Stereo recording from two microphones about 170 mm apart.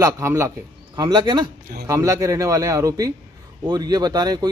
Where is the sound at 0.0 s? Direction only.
15° right (ahead or behind).